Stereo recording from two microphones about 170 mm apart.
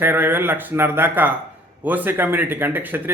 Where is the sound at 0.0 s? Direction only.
10° right (ahead or behind).